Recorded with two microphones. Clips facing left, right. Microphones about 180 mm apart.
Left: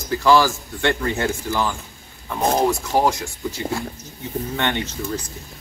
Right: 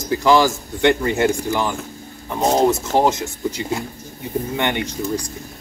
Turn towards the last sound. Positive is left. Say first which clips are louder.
# right 4 dB
turn(degrees=-15)  # may be behind; listen again after turning